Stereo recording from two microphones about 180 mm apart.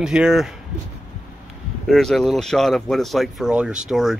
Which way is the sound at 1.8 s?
Centre (ahead or behind).